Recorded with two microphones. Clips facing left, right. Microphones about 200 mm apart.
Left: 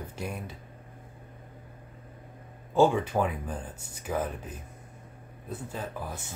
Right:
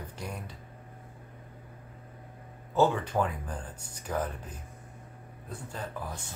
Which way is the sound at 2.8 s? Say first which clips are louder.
Left 3 dB; 10° left (ahead or behind).